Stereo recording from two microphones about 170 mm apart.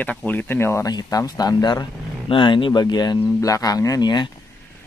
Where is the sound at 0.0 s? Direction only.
10° left (ahead or behind); by 4.3 s 25° left (ahead or behind).